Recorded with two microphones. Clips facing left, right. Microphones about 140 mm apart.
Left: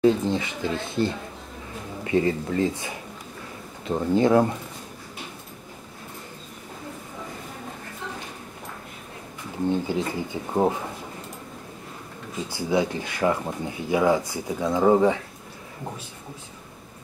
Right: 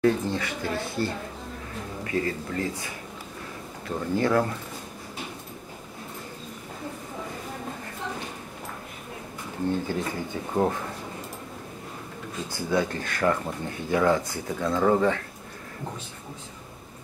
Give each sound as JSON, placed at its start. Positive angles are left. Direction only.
{"t": 0.0, "sound": "speech", "side_deg": 20}
{"t": 9.7, "sound": "speech", "side_deg": 15}
{"t": 12.5, "sound": "speech", "side_deg": 15}